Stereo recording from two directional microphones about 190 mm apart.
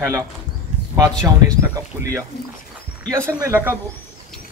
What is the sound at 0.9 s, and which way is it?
Speech, 20° right (ahead or behind).